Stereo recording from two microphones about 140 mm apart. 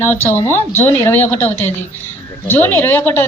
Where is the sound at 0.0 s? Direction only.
15° left (ahead or behind).